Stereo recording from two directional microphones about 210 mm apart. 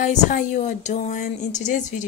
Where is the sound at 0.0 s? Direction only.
40° left (ahead or behind).